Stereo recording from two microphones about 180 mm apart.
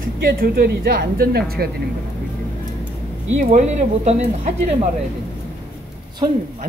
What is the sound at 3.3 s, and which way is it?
Speech, 40° right (ahead or behind).